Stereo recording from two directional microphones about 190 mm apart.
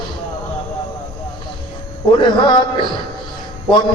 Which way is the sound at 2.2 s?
25° left (ahead or behind).